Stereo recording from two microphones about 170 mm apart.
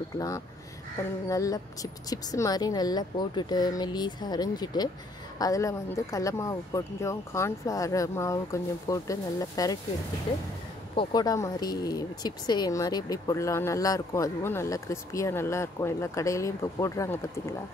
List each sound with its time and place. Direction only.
1.3 s speech: 20° left (ahead or behind)
11.0 s speech: 20° left (ahead or behind)